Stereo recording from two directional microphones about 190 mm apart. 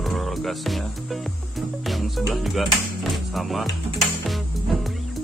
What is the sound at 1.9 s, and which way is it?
Music, centre (ahead or behind).